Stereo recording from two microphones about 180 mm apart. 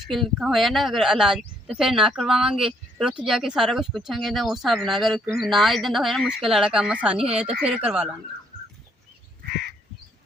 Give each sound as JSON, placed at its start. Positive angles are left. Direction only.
{"t": 0.1, "sound": "a woman's voice", "side_deg": 0}
{"t": 9.4, "sound": "crow", "side_deg": -65}